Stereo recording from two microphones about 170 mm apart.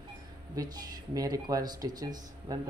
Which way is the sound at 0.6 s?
20° right (ahead or behind).